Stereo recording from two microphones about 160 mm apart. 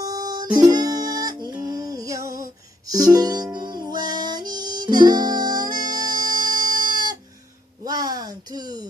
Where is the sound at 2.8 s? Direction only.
20° right (ahead or behind).